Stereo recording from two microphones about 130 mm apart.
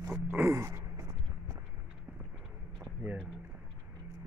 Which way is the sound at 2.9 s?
15° right (ahead or behind).